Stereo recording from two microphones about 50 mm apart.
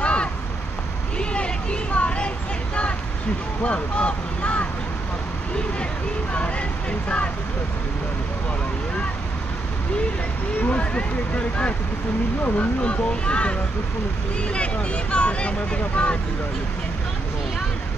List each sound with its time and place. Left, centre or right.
0.0 s vehicle: left
3.6 s speech: left
6.3 s speech: left
10.6 s speech: left